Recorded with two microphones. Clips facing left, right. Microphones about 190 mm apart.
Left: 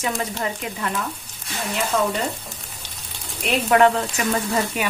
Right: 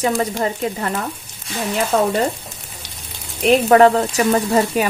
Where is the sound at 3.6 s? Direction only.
40° right (ahead or behind).